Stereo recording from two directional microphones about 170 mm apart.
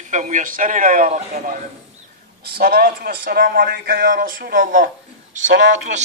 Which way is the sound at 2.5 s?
65° right (ahead or behind).